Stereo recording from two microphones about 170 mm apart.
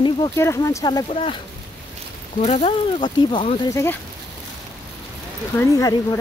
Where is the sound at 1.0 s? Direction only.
35° left (ahead or behind).